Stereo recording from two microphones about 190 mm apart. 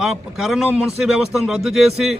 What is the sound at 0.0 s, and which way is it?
Speech, centre (ahead or behind).